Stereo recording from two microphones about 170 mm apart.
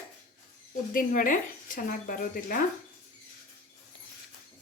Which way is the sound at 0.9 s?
55° left (ahead or behind).